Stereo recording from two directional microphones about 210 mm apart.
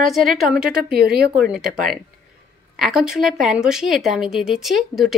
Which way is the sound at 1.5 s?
Centre (ahead or behind).